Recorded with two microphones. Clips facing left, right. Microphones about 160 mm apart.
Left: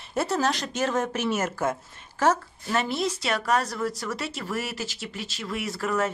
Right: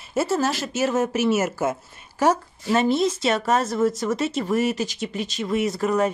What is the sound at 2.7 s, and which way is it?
Speech, 20° right (ahead or behind).